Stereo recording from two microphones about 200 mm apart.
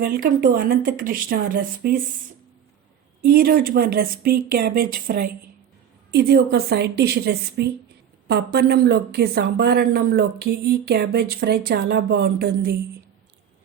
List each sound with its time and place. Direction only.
0.0 s a woman's voice: 45° right (ahead or behind)
3.2 s a woman's voice: 45° right (ahead or behind)
6.1 s a woman's voice: 55° right (ahead or behind)